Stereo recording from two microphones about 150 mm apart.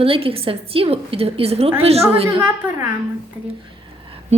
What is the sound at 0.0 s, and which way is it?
A woman's voice, 40° right (ahead or behind).